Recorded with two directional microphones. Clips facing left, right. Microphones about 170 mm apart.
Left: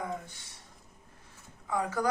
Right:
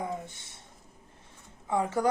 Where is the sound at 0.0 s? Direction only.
25° right (ahead or behind).